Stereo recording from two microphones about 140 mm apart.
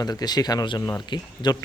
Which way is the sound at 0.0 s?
25° left (ahead or behind).